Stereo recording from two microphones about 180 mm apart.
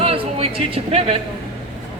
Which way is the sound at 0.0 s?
30° right (ahead or behind).